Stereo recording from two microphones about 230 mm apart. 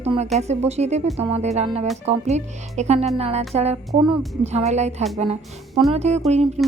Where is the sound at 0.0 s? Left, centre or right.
Right.